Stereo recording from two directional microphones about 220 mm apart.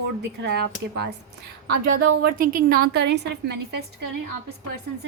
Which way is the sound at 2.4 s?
40° right (ahead or behind).